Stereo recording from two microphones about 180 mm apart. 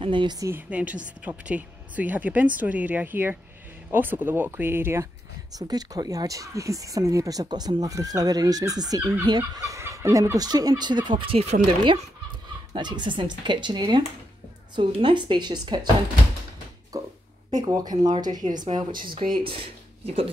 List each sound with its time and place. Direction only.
0.0 s a woman's voice: 25° right (ahead or behind)
16.9 s a sound: 20° right (ahead or behind)
17.6 s speech: 20° right (ahead or behind)